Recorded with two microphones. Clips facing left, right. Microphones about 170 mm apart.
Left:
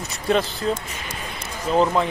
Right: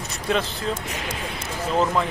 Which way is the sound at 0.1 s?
Centre (ahead or behind).